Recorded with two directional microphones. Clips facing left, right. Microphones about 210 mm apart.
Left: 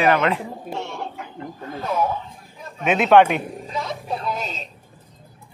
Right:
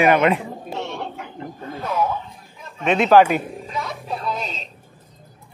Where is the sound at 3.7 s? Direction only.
25° left (ahead or behind).